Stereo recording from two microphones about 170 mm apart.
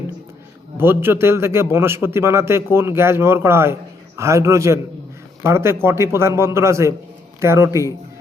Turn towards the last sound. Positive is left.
turn(degrees=-15)  # may be behind; listen again after turning